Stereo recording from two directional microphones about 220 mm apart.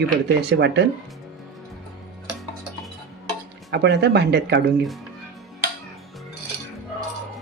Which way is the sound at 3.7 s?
50° right (ahead or behind).